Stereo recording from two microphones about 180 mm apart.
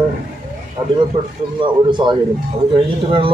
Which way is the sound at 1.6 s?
25° right (ahead or behind).